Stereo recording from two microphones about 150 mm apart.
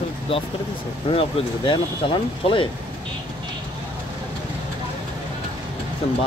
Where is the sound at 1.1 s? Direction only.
35° left (ahead or behind).